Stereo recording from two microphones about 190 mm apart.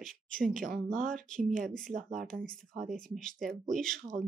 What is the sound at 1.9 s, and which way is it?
Speech, 40° right (ahead or behind).